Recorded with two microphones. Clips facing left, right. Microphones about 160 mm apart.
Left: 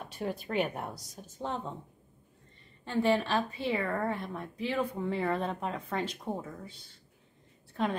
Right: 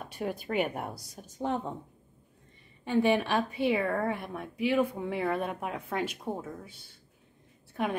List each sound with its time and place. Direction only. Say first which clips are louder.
0.1 s a woman's voice: right 1 dB; 10° right (ahead or behind)
2.8 s a woman's voice: right 2 dB; 15° right (ahead or behind)